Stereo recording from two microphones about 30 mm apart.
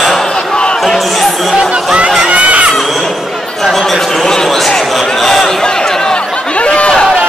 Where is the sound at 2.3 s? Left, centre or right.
Right.